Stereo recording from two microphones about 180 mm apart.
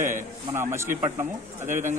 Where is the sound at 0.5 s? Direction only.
15° right (ahead or behind).